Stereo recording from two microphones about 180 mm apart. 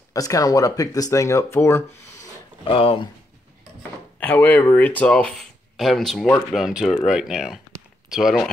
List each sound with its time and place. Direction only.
0.1 s speech: 20° left (ahead or behind)
2.6 s speech: 30° left (ahead or behind)
4.2 s speech: 10° left (ahead or behind)